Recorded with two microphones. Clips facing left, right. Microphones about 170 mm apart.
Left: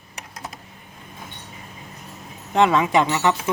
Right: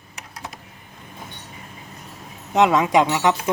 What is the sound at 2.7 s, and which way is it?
Speech, 5° right (ahead or behind).